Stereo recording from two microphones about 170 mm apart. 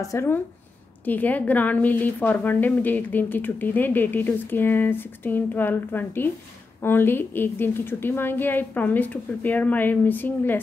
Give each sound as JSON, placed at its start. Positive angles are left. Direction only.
{"t": 0.0, "sound": "a woman's voice", "side_deg": 15}